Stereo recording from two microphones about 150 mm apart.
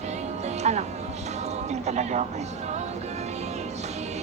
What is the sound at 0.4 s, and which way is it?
Music, 50° right (ahead or behind).